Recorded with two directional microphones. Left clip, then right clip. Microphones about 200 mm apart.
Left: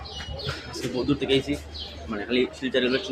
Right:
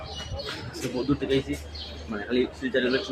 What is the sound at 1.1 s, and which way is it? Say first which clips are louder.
A man's voice: left 3 dB; 5° left (ahead or behind).